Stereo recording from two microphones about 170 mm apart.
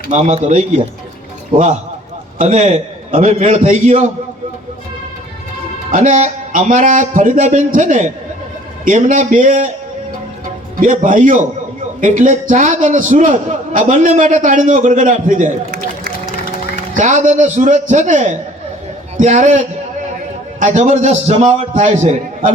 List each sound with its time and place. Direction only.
0.1 s a man's voice: 45° right (ahead or behind)
2.4 s a man's voice: 45° right (ahead or behind)
5.9 s a man's voice: 45° right (ahead or behind)
10.8 s a man's voice: 50° right (ahead or behind)
16.9 s a man's voice: 45° right (ahead or behind)